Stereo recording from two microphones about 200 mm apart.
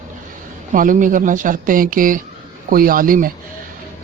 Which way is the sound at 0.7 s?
40° right (ahead or behind).